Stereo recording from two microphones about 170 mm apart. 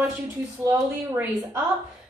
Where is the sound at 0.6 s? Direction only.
15° right (ahead or behind).